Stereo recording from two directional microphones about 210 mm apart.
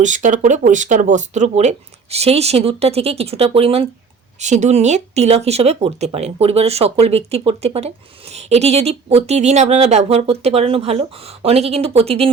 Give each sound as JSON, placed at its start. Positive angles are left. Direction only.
{"t": 0.0, "sound": "speech", "side_deg": -35}